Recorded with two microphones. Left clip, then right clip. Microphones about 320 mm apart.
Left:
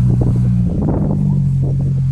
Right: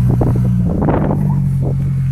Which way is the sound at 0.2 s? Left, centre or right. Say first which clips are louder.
Right 2 dB; right.